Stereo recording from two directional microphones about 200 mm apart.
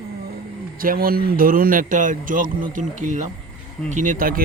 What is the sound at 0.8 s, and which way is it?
Speech, 45° right (ahead or behind).